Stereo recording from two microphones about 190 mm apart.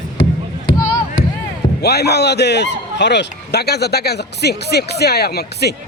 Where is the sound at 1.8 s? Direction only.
60° left (ahead or behind).